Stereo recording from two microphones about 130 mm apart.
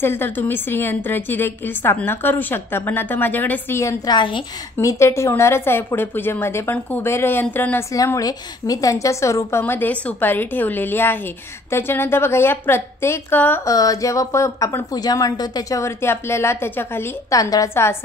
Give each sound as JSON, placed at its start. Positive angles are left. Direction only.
{"t": 0.0, "sound": "a woman's voice", "side_deg": 15}
{"t": 4.8, "sound": "a woman's voice", "side_deg": 20}
{"t": 13.7, "sound": "a woman's voice", "side_deg": 25}